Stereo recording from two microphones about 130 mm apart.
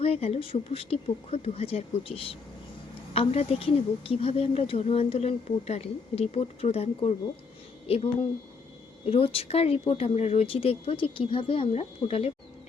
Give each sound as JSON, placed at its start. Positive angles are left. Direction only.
{"t": 0.0, "sound": "speech", "side_deg": 50}